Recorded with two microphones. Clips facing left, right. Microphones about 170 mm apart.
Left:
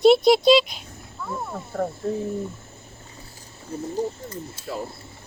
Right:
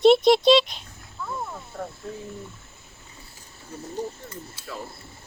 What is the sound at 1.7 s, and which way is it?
Speech, 60° left (ahead or behind).